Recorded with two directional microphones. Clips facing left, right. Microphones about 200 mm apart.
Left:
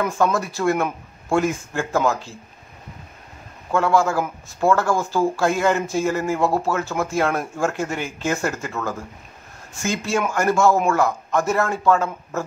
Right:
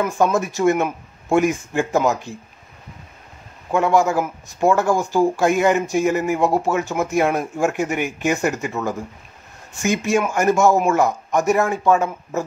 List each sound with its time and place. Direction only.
0.1 s speech: 20° right (ahead or behind)
3.7 s speech: 20° right (ahead or behind)